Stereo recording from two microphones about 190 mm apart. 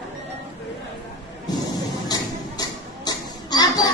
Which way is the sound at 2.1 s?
20° left (ahead or behind).